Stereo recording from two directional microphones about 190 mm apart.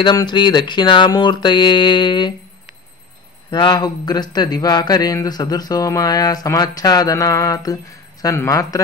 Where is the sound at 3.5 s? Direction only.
25° left (ahead or behind).